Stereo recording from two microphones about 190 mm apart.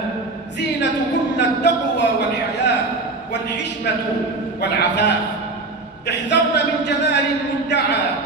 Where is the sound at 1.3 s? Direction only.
65° left (ahead or behind).